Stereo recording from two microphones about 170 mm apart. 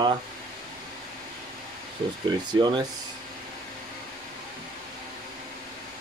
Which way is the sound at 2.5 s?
25° right (ahead or behind).